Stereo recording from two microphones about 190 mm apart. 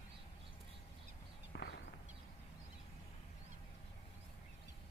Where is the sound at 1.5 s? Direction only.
60° left (ahead or behind).